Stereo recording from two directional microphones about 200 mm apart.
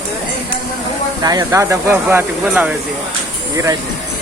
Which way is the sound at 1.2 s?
15° right (ahead or behind).